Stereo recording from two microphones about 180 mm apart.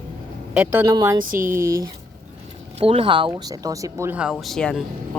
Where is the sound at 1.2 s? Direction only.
50° right (ahead or behind).